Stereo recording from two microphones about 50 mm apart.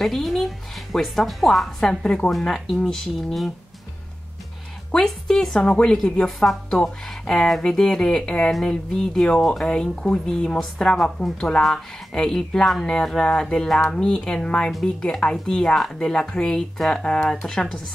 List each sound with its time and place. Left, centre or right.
0.0 s speech: centre
1.8 s a woman's voice: centre
4.9 s a woman's voice: centre
5.6 s a woman's voice: left
16.5 s a woman's voice: centre